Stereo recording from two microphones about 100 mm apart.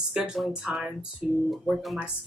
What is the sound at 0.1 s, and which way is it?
Speech, 10° right (ahead or behind).